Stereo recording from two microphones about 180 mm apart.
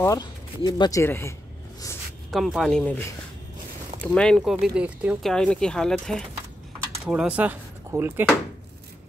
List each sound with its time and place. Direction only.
0.0 s speech: 20° left (ahead or behind)
2.3 s speech: centre (ahead or behind)
4.1 s speech: 5° left (ahead or behind); by 8.3 s 10° right (ahead or behind)